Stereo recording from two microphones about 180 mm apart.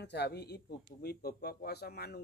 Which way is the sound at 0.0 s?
65° left (ahead or behind).